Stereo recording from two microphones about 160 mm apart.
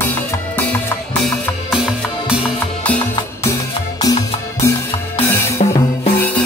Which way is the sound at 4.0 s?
25° left (ahead or behind).